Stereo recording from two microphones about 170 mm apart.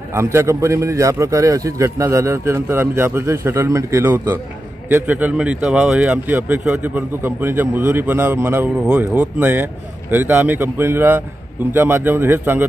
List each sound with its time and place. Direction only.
0.1 s speech: 15° right (ahead or behind)